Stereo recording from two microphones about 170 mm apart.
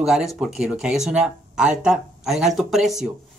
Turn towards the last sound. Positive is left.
turn(degrees=0)  # may be behind; listen again after turning